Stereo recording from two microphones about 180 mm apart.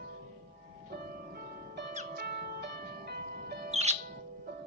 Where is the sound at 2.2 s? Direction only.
60° right (ahead or behind).